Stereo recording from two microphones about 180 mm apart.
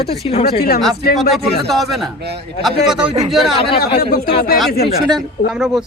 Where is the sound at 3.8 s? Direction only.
60° left (ahead or behind).